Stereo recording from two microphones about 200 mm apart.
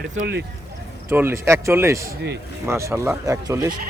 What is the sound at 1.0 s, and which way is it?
Speech, 10° right (ahead or behind).